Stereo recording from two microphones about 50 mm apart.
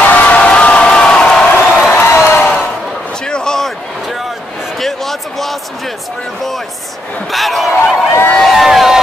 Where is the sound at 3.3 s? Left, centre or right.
Centre.